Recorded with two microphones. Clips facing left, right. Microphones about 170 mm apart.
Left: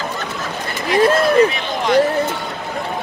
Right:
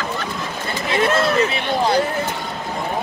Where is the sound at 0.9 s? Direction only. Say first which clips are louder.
Left 5 dB; 30° left (ahead or behind).